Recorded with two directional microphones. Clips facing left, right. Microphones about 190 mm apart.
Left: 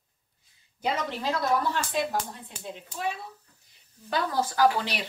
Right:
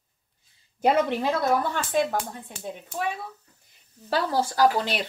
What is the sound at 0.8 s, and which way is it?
Speech, 55° right (ahead or behind).